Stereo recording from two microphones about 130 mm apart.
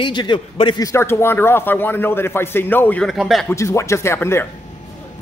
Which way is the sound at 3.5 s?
20° left (ahead or behind).